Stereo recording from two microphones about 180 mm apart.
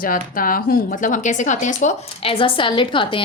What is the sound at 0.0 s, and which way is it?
Speech, 50° left (ahead or behind).